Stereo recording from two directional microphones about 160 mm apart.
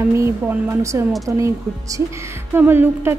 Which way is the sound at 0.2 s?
15° right (ahead or behind).